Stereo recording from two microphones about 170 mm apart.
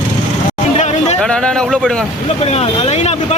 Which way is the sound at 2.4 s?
35° left (ahead or behind).